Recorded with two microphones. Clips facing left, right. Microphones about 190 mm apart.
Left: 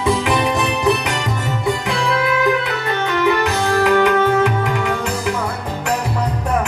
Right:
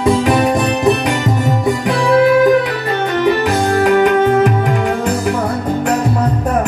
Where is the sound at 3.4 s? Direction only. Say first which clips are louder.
Right 3 dB; 50° right (ahead or behind).